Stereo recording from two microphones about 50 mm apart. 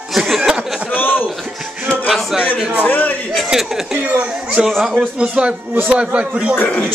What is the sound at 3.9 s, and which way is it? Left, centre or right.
Speech, right.